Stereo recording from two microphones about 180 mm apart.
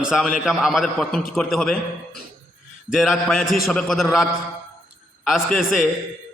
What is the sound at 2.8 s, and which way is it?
A man's voice, centre (ahead or behind).